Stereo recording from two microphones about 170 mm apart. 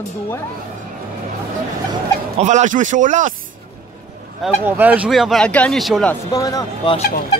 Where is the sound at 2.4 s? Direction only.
45° right (ahead or behind).